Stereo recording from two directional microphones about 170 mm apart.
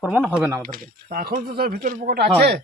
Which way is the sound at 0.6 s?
55° right (ahead or behind).